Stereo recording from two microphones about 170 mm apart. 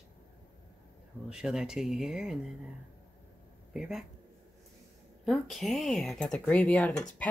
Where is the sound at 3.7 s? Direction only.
Centre (ahead or behind).